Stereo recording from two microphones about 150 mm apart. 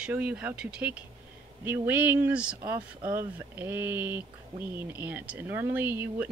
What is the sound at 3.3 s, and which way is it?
Speech, 15° right (ahead or behind).